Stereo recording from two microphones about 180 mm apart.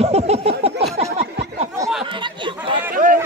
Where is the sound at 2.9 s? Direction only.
50° right (ahead or behind).